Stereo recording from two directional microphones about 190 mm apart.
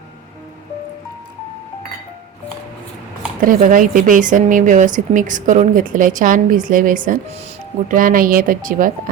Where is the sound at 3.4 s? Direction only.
45° right (ahead or behind).